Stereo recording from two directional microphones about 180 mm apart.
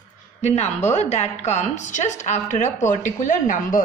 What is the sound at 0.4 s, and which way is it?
A woman's voice, 40° left (ahead or behind).